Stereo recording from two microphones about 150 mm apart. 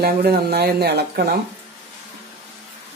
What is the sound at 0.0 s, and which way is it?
Speech, 90° right.